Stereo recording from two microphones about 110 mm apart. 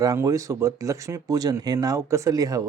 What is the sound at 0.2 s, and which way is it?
Speech, 30° right (ahead or behind).